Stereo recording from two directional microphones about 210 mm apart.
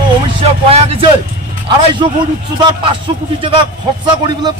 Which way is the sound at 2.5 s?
20° right (ahead or behind).